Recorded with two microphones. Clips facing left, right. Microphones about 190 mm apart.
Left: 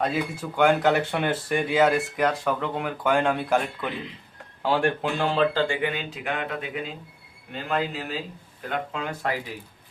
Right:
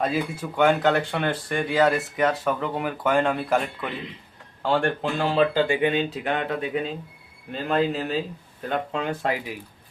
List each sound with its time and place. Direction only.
0.0 s speech: centre (ahead or behind)
5.6 s speech: 25° right (ahead or behind)